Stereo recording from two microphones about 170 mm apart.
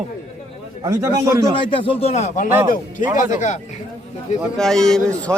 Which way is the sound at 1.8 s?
35° left (ahead or behind).